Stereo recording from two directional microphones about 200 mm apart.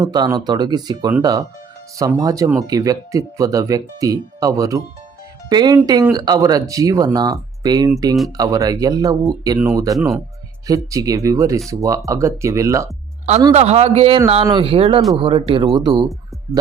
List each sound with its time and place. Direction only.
0.0 s speech: 15° right (ahead or behind)
13.5 s a man's voice: 30° right (ahead or behind)